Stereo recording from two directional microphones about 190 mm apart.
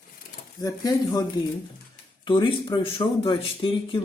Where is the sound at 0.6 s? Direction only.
20° left (ahead or behind).